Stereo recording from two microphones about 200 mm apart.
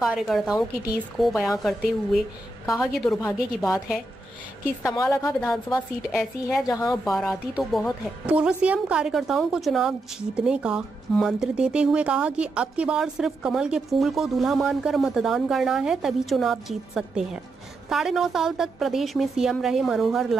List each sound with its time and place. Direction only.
0.0 s a woman's voice: centre (ahead or behind)
3.2 s a woman's voice: 15° left (ahead or behind)
3.6 s a woman's voice: centre (ahead or behind)
4.8 s a woman's voice: 15° left (ahead or behind)
6.7 s a woman's voice: 20° left (ahead or behind)
7.1 s a woman's voice: centre (ahead or behind)